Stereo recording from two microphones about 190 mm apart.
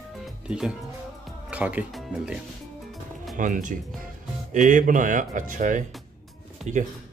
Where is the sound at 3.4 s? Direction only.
40° right (ahead or behind).